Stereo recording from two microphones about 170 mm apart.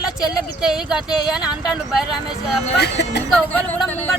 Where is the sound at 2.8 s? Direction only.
75° left (ahead or behind).